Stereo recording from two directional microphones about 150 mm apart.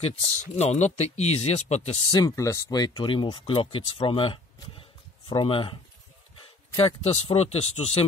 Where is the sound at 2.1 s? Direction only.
25° left (ahead or behind).